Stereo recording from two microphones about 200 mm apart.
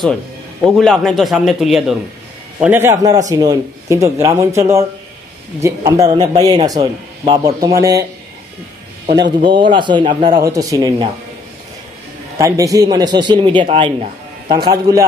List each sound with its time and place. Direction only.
0.7 s a man's voice: centre (ahead or behind); by 8.0 s 15° right (ahead or behind)
9.4 s a man's voice: 25° right (ahead or behind)
12.4 s a man's voice: 15° right (ahead or behind)